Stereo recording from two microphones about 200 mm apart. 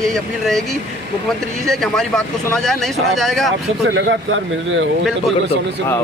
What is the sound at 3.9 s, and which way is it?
A man's voice, 70° right (ahead or behind).